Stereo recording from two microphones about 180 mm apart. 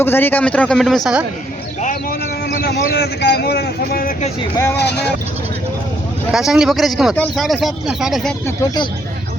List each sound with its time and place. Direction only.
0.0 s speech: 10° left (ahead or behind)
1.8 s a sound: 50° left (ahead or behind)
2.6 s a man's voice: 60° left (ahead or behind)
4.5 s speech: 15° left (ahead or behind)
4.8 s speech: 65° left (ahead or behind)
6.3 s speech: 5° right (ahead or behind)
8.4 s speech: 20° left (ahead or behind)